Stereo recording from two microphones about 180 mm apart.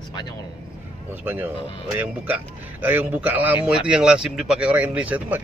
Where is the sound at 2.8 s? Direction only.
10° right (ahead or behind).